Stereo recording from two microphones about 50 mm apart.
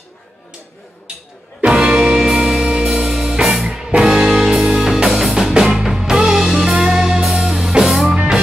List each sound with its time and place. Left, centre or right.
1.6 s music: centre